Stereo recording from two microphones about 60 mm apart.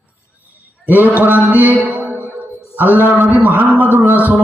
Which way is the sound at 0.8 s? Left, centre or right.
Right.